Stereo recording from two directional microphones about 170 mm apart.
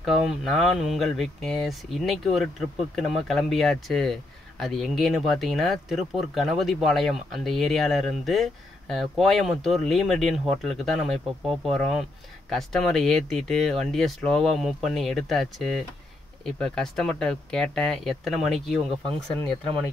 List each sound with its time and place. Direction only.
0.0 s speech: centre (ahead or behind)